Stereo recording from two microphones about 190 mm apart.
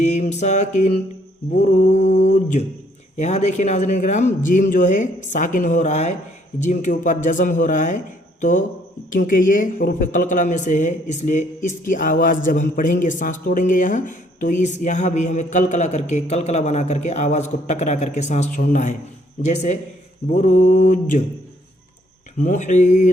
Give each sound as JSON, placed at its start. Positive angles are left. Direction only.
{"t": 0.0, "sound": "speech", "side_deg": 35}
{"t": 22.4, "sound": "speech", "side_deg": 40}